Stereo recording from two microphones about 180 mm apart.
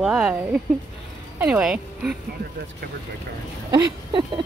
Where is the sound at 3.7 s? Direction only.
25° right (ahead or behind).